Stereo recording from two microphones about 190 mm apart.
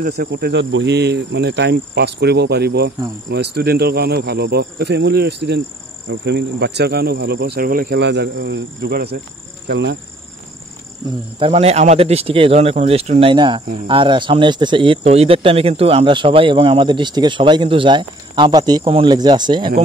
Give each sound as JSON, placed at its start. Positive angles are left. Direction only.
{"t": 0.0, "sound": "speech", "side_deg": -55}
{"t": 11.3, "sound": "speech", "side_deg": -30}